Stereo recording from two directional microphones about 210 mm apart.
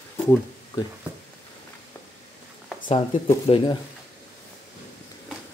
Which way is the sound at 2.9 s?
25° left (ahead or behind).